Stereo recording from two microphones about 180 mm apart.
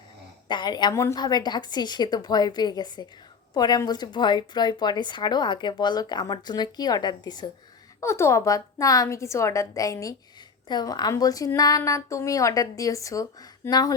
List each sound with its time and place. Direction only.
0.4 s a woman's voice: 25° left (ahead or behind)